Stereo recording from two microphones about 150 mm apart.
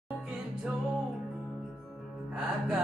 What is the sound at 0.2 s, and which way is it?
Music, 5° right (ahead or behind).